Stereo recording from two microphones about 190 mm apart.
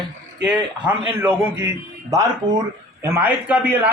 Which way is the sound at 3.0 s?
10° right (ahead or behind).